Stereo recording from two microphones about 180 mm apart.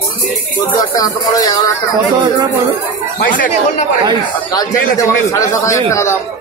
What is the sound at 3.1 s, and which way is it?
Speech, 50° left (ahead or behind).